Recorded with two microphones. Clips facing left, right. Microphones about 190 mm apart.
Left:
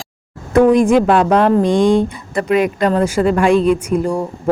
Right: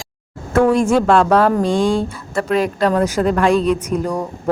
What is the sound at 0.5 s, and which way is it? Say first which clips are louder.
A woman's voice: left 3 dB; 15° left (ahead or behind).